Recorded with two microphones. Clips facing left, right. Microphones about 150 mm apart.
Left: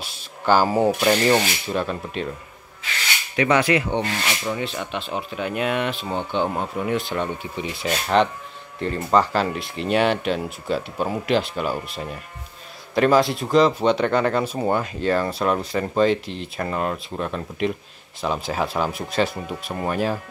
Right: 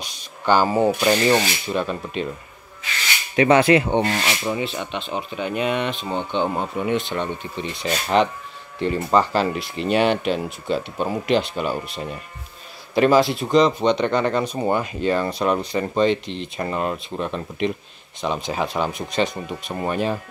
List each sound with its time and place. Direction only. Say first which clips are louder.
0.0 s speech: even; 5° left (ahead or behind)
3.3 s speech: right 4 dB; 30° right (ahead or behind)
4.5 s speech: right 2 dB; 5° right (ahead or behind)